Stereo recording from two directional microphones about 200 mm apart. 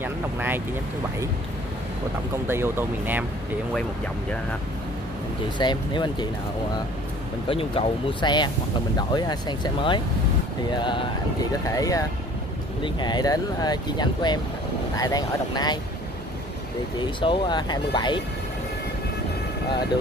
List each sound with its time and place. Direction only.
0.0 s speech: 10° right (ahead or behind)
2.4 s speech: 10° right (ahead or behind)
5.6 s speech: 20° left (ahead or behind)
7.4 s speech: 25° left (ahead or behind)
17.2 s speech: 25° left (ahead or behind)